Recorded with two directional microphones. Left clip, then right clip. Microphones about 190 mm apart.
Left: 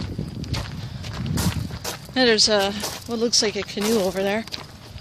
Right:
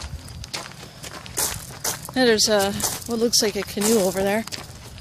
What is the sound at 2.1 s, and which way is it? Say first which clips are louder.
Speech: left 1 dB; 10° right (ahead or behind).